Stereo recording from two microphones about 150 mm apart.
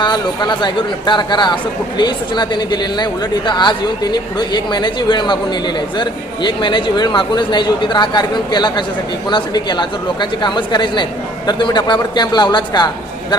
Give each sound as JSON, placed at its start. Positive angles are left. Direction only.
{"t": 0.0, "sound": "a man's voice", "side_deg": 30}